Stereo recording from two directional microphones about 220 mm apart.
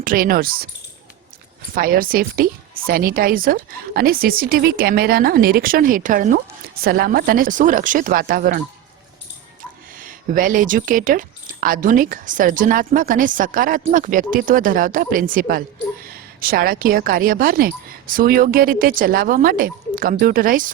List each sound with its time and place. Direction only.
0.0 s speech: 40° right (ahead or behind)
1.7 s speech: 40° right (ahead or behind)
10.3 s a woman's voice: 40° right (ahead or behind)